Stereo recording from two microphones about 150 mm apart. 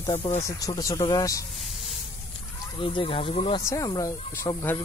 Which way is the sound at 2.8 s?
35° left (ahead or behind).